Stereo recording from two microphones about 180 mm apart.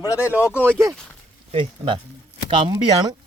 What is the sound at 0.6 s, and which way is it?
Speech, 10° right (ahead or behind).